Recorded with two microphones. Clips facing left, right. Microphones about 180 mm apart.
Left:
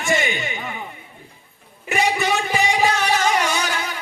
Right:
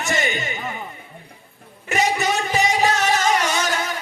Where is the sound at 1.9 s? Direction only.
40° right (ahead or behind).